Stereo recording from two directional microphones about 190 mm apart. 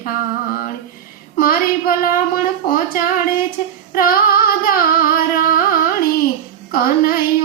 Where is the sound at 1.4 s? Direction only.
50° left (ahead or behind).